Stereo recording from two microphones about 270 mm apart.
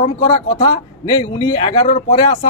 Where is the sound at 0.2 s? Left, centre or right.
Centre.